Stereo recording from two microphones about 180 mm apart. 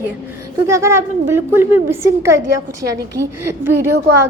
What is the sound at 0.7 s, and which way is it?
A woman's voice, 15° right (ahead or behind).